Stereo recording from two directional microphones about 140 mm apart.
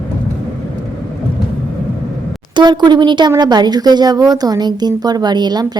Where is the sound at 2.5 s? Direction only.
30° right (ahead or behind).